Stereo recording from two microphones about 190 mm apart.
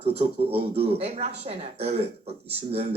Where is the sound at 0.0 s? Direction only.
30° right (ahead or behind).